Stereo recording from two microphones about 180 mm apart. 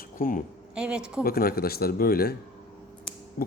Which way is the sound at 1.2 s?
55° left (ahead or behind).